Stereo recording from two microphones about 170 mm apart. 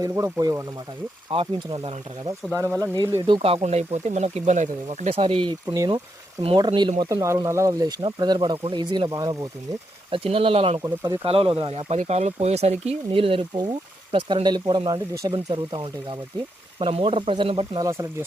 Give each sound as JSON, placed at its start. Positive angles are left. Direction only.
{"t": 0.0, "sound": "speech", "side_deg": -20}
{"t": 1.3, "sound": "speech", "side_deg": -30}
{"t": 6.4, "sound": "speech", "side_deg": -35}
{"t": 10.1, "sound": "speech", "side_deg": -35}
{"t": 17.8, "sound": "speech", "side_deg": -15}